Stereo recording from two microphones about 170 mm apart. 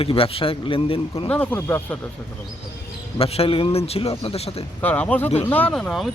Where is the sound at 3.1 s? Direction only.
35° left (ahead or behind).